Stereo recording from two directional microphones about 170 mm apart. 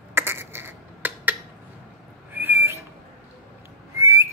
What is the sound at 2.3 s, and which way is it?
Owl, 15° right (ahead or behind).